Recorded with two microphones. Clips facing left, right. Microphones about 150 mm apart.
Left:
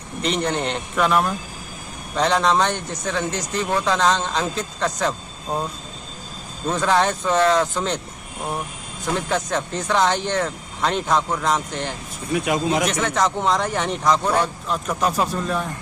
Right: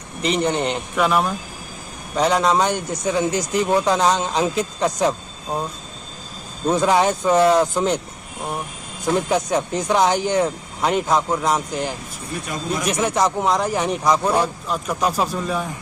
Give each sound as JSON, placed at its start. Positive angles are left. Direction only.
{"t": 0.2, "sound": "speech", "side_deg": -5}
{"t": 6.7, "sound": "speech", "side_deg": -15}
{"t": 9.1, "sound": "speech", "side_deg": -15}
{"t": 12.3, "sound": "speech", "side_deg": 90}
{"t": 12.9, "sound": "speech", "side_deg": -10}